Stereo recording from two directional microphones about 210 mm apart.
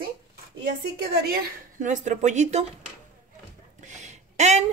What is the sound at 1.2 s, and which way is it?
A woman's voice, 45° right (ahead or behind).